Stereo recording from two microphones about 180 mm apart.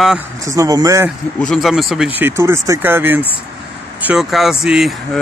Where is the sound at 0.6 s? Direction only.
20° right (ahead or behind).